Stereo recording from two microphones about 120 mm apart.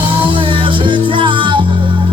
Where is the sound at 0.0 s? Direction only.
45° right (ahead or behind).